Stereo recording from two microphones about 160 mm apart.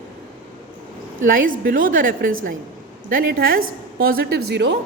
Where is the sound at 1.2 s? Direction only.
60° right (ahead or behind).